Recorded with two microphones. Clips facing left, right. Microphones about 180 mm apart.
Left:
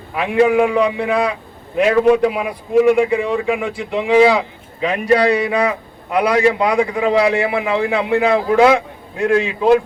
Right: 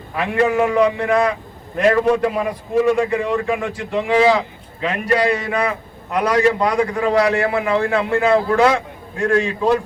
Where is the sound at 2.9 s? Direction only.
10° left (ahead or behind).